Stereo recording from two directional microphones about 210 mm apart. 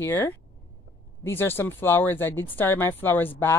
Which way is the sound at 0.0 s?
10° left (ahead or behind).